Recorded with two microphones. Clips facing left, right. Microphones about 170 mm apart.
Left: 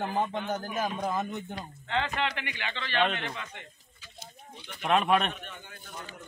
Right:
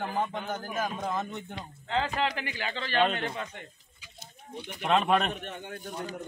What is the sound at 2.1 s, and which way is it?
A man's voice, 35° right (ahead or behind).